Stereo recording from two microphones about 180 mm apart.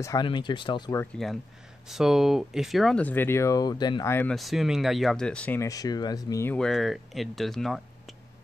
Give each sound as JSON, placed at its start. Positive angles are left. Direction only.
{"t": 0.0, "sound": "speech", "side_deg": 25}
{"t": 1.1, "sound": "speech", "side_deg": 0}
{"t": 4.1, "sound": "speech", "side_deg": 5}